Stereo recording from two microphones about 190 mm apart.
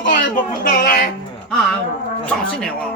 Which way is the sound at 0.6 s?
45° left (ahead or behind).